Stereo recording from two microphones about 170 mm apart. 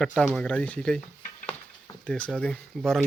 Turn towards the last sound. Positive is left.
turn(degrees=5)  # may be behind; listen again after turning